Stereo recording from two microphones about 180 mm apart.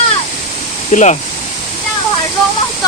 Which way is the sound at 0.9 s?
40° left (ahead or behind).